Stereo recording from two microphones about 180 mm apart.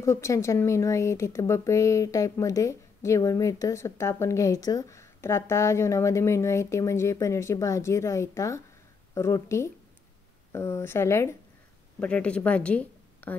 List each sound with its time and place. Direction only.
0.0 s a woman's voice: 15° left (ahead or behind)